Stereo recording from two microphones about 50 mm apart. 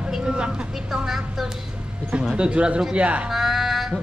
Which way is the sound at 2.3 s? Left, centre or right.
Right.